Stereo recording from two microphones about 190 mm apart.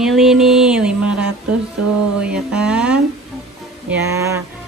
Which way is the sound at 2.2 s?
5° right (ahead or behind).